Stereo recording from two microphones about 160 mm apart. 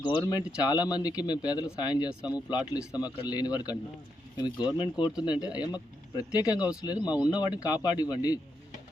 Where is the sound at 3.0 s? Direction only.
25° left (ahead or behind).